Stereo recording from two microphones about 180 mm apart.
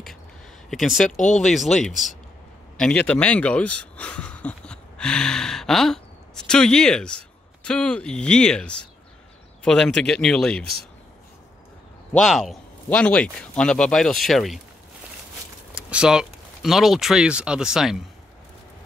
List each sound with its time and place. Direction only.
0.7 s speech: centre (ahead or behind)
1.1 s speech: 40° left (ahead or behind)
1.5 s speech: centre (ahead or behind)
12.1 s speech: 5° left (ahead or behind)
15.7 s speech: 5° right (ahead or behind)